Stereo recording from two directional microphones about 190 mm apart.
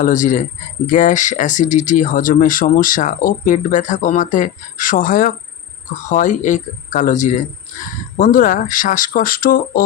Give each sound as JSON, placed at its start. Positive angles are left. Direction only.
{"t": 0.0, "sound": "speech", "side_deg": 45}